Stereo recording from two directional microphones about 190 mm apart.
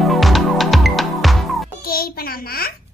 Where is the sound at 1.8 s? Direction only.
50° left (ahead or behind).